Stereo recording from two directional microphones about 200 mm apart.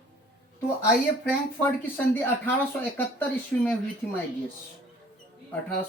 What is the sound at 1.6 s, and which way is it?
Speech, 10° left (ahead or behind).